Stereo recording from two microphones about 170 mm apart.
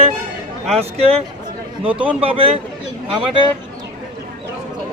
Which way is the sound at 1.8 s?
30° right (ahead or behind).